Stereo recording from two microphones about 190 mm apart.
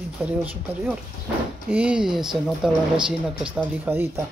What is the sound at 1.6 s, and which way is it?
Speech, 5° right (ahead or behind).